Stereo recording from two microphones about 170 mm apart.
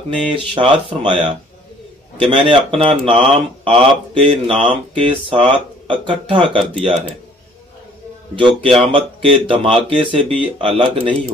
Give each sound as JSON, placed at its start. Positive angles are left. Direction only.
{"t": 0.3, "sound": "speech", "side_deg": -30}
{"t": 8.4, "sound": "speech", "side_deg": -30}